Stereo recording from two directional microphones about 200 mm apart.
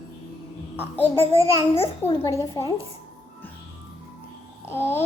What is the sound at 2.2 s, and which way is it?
Speech, 15° left (ahead or behind).